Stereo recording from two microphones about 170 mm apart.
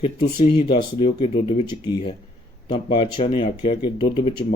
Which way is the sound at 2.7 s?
30° left (ahead or behind).